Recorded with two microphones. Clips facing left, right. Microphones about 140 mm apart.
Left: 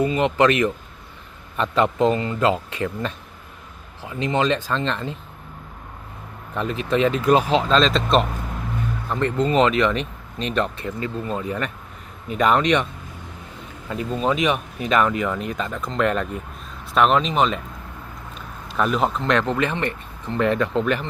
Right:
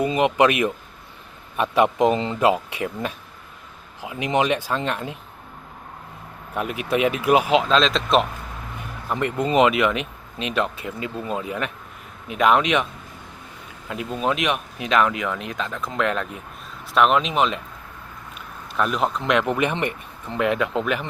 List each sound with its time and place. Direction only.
0.0 s speech: 15° right (ahead or behind)
6.5 s speech: 10° right (ahead or behind)
9.0 s speech: 10° right (ahead or behind)
13.9 s speech: 5° right (ahead or behind)
18.8 s speech: centre (ahead or behind)
19.2 s speech: 10° right (ahead or behind)